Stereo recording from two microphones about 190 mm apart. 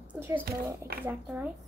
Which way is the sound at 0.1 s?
10° right (ahead or behind).